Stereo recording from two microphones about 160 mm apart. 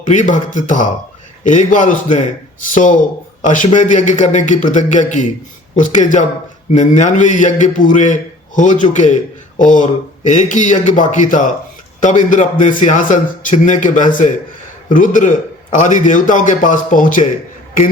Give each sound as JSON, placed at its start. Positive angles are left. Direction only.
{"t": 0.0, "sound": "a man's voice", "side_deg": 50}